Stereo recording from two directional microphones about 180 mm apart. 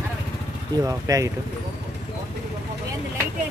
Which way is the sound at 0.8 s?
20° right (ahead or behind).